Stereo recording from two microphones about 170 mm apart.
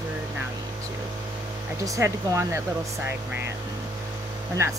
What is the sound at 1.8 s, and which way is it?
Speech, 15° right (ahead or behind).